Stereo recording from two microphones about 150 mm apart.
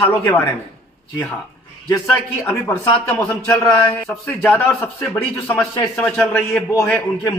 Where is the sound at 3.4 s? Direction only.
20° left (ahead or behind).